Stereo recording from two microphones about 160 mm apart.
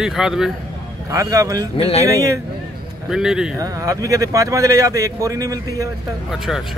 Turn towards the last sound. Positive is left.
turn(degrees=-20)  # may be behind; listen again after turning